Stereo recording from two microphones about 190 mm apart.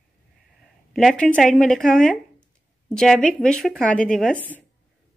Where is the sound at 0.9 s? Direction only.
Centre (ahead or behind).